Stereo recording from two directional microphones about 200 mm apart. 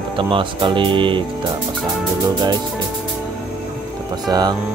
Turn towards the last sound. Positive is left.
turn(degrees=-20)  # may be behind; listen again after turning